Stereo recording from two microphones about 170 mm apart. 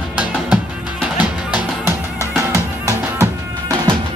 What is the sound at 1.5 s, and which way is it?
Music, 10° right (ahead or behind).